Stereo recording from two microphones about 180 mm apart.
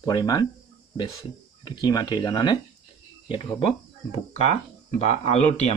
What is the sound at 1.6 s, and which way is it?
Speech, 25° left (ahead or behind).